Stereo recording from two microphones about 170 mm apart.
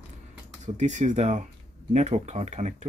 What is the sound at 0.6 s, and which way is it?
Speech, 45° right (ahead or behind).